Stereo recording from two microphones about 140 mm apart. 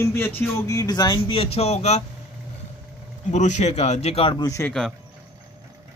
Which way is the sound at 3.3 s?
55° left (ahead or behind).